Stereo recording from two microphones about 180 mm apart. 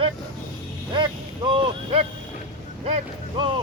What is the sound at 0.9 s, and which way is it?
Speech, 25° right (ahead or behind).